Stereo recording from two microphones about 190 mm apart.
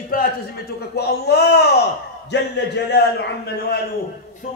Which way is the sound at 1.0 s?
60° left (ahead or behind).